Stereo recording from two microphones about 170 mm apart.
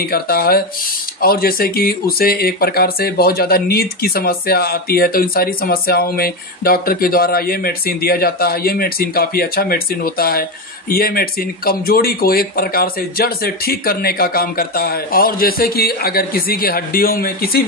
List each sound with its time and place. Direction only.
0.0 s speech: 65° left (ahead or behind)